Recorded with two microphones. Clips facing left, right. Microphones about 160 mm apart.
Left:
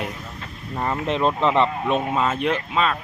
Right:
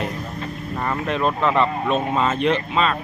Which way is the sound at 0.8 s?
25° left (ahead or behind).